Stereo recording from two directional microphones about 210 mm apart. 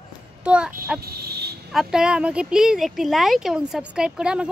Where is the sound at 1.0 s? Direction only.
50° right (ahead or behind).